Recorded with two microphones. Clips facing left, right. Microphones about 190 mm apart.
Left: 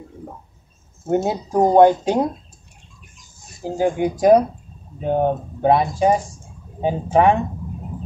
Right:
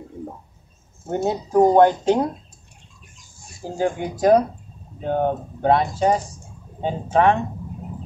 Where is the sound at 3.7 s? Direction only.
15° left (ahead or behind).